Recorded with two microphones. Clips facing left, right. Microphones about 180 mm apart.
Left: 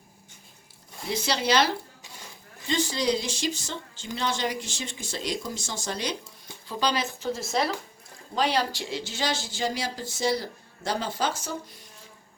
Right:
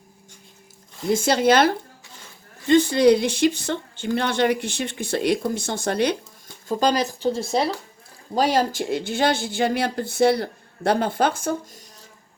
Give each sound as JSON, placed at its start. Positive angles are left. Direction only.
{"t": 1.0, "sound": "speech", "side_deg": -50}
{"t": 6.7, "sound": "speech", "side_deg": -45}
{"t": 8.4, "sound": "speech", "side_deg": -45}